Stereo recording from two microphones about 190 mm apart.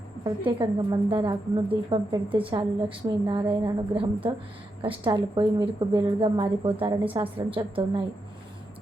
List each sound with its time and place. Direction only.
0.3 s a woman's voice: 25° right (ahead or behind)